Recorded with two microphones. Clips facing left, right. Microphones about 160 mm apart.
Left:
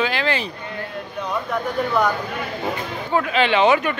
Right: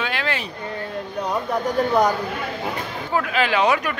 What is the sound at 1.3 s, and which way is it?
Speech, 35° right (ahead or behind).